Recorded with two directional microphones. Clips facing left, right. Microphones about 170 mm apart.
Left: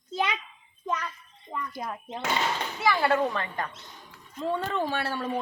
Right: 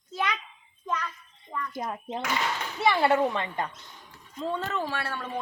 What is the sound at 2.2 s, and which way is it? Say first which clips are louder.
Speech: left 2 dB; 25° left (ahead or behind).